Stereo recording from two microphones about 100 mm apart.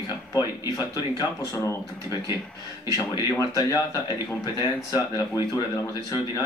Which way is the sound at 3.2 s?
30° left (ahead or behind).